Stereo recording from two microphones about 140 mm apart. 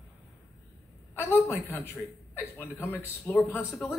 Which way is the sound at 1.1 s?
15° left (ahead or behind).